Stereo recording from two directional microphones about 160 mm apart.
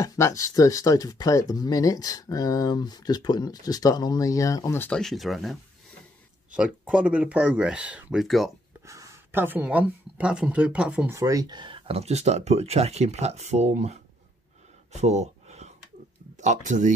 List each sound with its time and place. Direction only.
0.0 s speech: 20° left (ahead or behind); by 8.5 s centre (ahead or behind)
8.8 s speech: 20° right (ahead or behind)
11.1 s speech: 20° right (ahead or behind); by 13.9 s 45° right (ahead or behind)
14.9 s a sound: 45° right (ahead or behind)
16.3 s speech: 50° right (ahead or behind)